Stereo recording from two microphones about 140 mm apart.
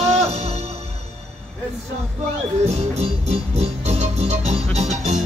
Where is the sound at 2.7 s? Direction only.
50° right (ahead or behind).